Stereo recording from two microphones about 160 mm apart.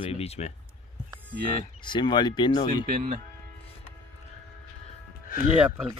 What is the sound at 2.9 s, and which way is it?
Speech, 65° right (ahead or behind).